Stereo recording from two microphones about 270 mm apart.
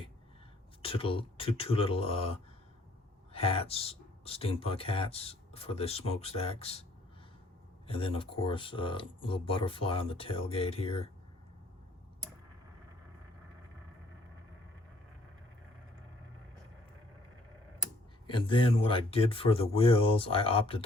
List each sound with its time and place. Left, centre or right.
0.8 s speech: centre
7.9 s speech: centre
18.3 s speech: centre